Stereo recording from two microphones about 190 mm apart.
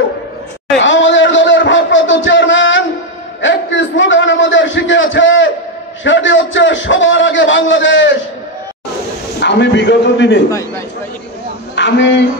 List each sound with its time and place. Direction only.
0.8 s a sound: 75° left (ahead or behind)
9.4 s a man's voice: 65° left (ahead or behind)
11.7 s a man's voice: 70° left (ahead or behind)